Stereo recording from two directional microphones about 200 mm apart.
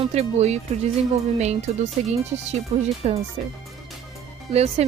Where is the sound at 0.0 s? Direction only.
30° right (ahead or behind).